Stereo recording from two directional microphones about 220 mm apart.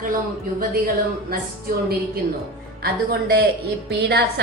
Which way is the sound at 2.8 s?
45° right (ahead or behind).